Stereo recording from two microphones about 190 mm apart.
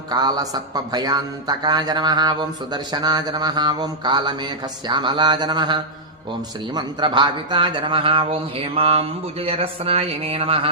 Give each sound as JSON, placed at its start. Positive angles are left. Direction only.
{"t": 0.1, "sound": "a man's voice", "side_deg": -20}